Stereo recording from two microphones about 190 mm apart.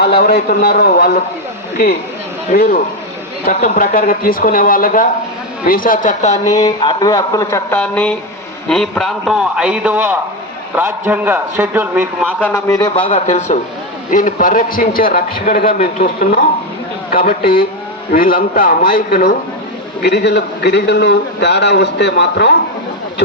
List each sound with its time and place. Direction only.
0.0 s a man's voice: 55° left (ahead or behind)
2.5 s a man's voice: 45° left (ahead or behind)
6.6 s a man's voice: 25° left (ahead or behind); by 12.5 s 10° right (ahead or behind)
12.5 s a man's voice: 15° left (ahead or behind)
13.0 s a man's voice: 30° left (ahead or behind); by 22.5 s 60° left (ahead or behind)